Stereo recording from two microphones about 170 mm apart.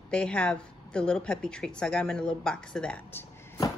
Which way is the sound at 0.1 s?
5° left (ahead or behind).